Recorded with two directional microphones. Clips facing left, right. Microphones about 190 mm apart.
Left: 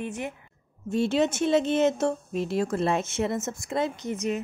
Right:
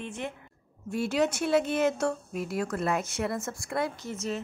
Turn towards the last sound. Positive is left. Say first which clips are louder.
# left 5 dB
turn(degrees=15)  # may be behind; listen again after turning